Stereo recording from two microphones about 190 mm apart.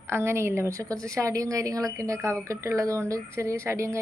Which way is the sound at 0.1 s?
15° right (ahead or behind).